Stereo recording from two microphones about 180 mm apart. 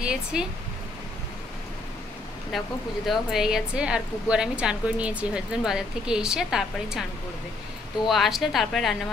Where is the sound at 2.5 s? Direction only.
Centre (ahead or behind).